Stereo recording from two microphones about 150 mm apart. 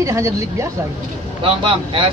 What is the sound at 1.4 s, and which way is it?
Speech, 35° right (ahead or behind).